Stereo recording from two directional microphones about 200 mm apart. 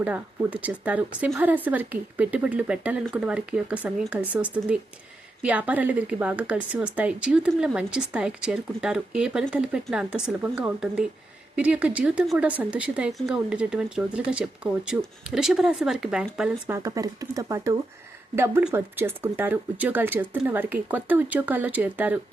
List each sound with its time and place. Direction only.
0.0 s speech: 5° right (ahead or behind)
16.7 s speech: 15° right (ahead or behind)